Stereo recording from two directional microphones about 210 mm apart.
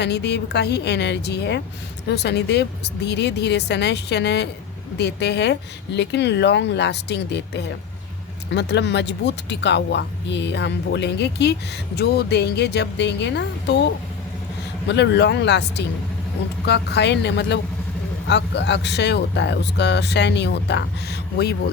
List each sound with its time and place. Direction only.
0.0 s speech: 55° left (ahead or behind)
14.8 s speech: 55° left (ahead or behind)